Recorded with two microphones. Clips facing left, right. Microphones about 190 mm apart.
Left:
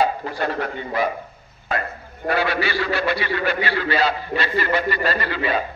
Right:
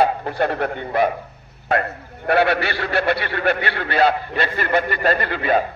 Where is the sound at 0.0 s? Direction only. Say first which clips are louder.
Right 3 dB; 60° right (ahead or behind).